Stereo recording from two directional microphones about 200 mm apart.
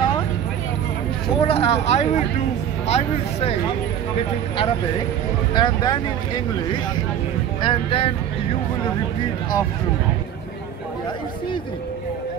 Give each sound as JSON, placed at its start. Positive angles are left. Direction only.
{"t": 1.4, "sound": "speech", "side_deg": 30}
{"t": 5.5, "sound": "speech", "side_deg": 20}
{"t": 7.6, "sound": "speech", "side_deg": 25}